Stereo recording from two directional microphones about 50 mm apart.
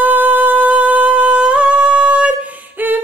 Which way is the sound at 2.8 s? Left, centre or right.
Right.